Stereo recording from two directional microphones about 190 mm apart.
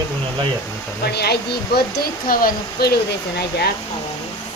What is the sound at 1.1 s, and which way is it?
Speech, 60° left (ahead or behind).